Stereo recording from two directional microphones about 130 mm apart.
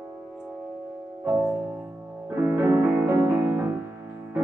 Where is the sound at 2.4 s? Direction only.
15° right (ahead or behind).